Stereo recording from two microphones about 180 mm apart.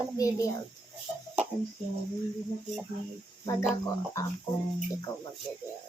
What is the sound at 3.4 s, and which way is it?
Speech, 15° left (ahead or behind).